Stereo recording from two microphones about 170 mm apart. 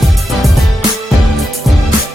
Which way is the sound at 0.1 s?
Centre (ahead or behind).